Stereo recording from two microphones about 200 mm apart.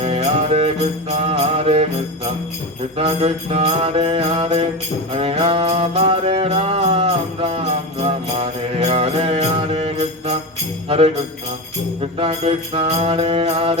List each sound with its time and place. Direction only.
0.0 s music: 30° right (ahead or behind)
1.1 s mantra: 30° right (ahead or behind)
5.1 s music: 30° right (ahead or behind)
12.2 s mantra: 30° right (ahead or behind)